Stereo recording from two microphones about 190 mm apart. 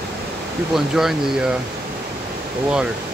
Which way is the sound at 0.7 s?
Centre (ahead or behind).